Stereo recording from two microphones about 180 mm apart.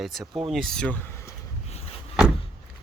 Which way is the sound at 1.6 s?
35° left (ahead or behind).